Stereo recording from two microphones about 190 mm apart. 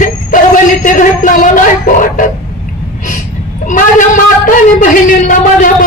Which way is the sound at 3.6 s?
45° left (ahead or behind).